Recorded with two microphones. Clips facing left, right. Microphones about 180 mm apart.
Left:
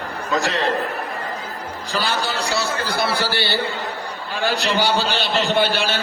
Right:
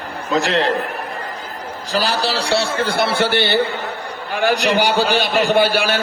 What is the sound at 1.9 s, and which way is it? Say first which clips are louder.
A man's voice: right 4 dB; 40° right (ahead or behind).